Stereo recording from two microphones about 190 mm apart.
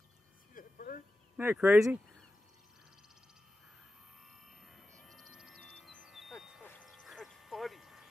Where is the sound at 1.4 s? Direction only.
10° right (ahead or behind).